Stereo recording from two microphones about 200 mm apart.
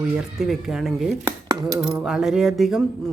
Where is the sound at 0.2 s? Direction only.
Centre (ahead or behind).